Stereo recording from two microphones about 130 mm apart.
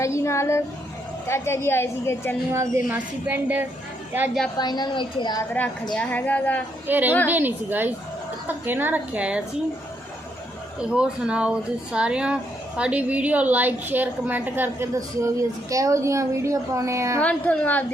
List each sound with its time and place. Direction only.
0.0 s a sound: 20° left (ahead or behind)
1.3 s speech: 20° left (ahead or behind)
2.5 s speech: 20° right (ahead or behind)
4.5 s a woman's voice: 30° left (ahead or behind)
5.9 s a woman's voice: 10° left (ahead or behind)
6.8 s speech: 15° right (ahead or behind)
10.8 s speech: 5° right (ahead or behind); by 17.2 s 20° right (ahead or behind)
17.2 s a woman's voice: 10° left (ahead or behind)